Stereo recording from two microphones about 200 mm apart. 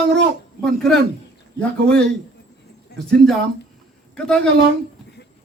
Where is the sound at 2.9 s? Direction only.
55° left (ahead or behind).